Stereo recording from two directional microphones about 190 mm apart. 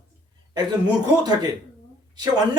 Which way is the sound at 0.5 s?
20° right (ahead or behind).